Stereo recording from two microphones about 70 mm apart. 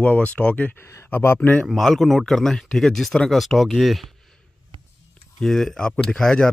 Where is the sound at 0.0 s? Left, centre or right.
Centre.